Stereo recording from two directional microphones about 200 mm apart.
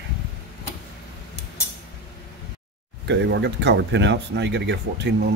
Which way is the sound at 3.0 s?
65° right (ahead or behind).